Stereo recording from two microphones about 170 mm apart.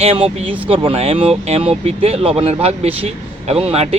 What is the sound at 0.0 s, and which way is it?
Speech, 35° right (ahead or behind).